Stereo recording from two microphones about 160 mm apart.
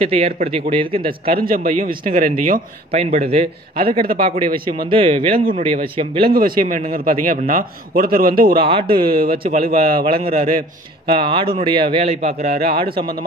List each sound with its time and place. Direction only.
0.0 s speech: 35° right (ahead or behind)
1.4 s a man's voice: 65° right (ahead or behind)
2.9 s speech: 40° right (ahead or behind)
6.3 s a man's voice: 65° right (ahead or behind)
8.6 s speech: 35° right (ahead or behind)
9.0 s a man's voice: 65° right (ahead or behind)
10.1 s speech: 35° right (ahead or behind)
12.7 s speech: 30° right (ahead or behind)